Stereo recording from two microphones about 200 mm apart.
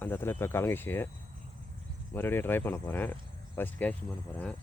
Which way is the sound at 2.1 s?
10° left (ahead or behind).